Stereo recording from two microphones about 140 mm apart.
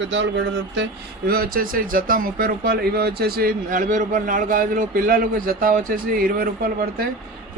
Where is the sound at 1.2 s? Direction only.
90° right.